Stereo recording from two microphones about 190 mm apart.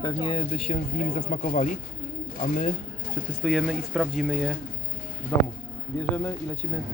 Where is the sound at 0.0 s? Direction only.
25° left (ahead or behind).